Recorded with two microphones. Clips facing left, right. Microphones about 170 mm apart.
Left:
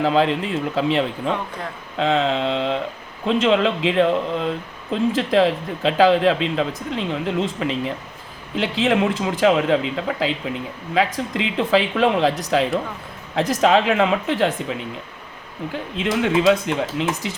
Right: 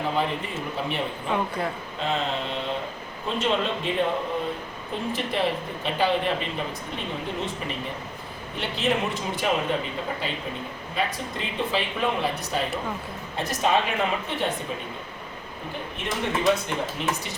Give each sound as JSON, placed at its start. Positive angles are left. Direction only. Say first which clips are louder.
{"t": 0.0, "sound": "speech", "louder": "left 8 dB", "side_deg": 90}